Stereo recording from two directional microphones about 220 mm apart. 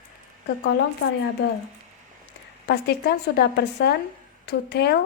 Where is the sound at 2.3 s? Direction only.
50° left (ahead or behind).